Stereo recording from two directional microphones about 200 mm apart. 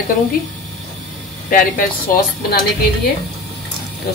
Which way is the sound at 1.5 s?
45° left (ahead or behind).